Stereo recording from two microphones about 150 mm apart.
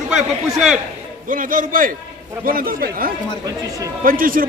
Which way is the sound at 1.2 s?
65° right (ahead or behind).